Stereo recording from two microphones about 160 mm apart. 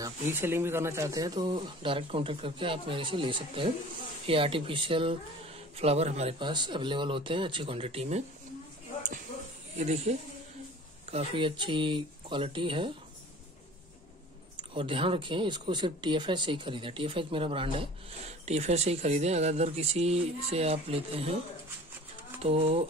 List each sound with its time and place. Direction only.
0.0 s speech: 15° right (ahead or behind); by 6.5 s 40° right (ahead or behind)
6.5 s speech: 30° right (ahead or behind)
9.8 s speech: 45° right (ahead or behind)
14.6 s speech: 30° right (ahead or behind)
22.4 s speech: 40° right (ahead or behind)